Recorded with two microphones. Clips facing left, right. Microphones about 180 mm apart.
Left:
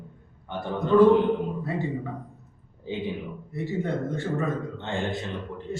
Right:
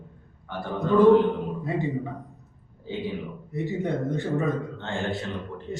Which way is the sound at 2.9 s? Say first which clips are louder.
Left 1 dB; 20° left (ahead or behind).